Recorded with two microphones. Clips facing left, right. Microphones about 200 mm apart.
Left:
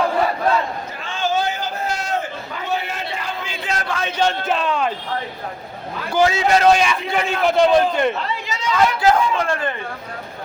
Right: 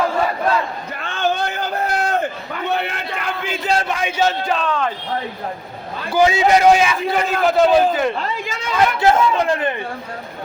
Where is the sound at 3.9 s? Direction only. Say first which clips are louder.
Right 1 dB; 10° right (ahead or behind); by 4.9 s 10° left (ahead or behind).